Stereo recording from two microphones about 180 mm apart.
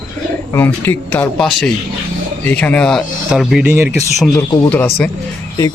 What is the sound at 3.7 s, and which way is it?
Speech, 15° right (ahead or behind).